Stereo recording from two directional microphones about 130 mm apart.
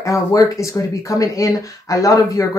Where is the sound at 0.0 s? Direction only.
25° left (ahead or behind).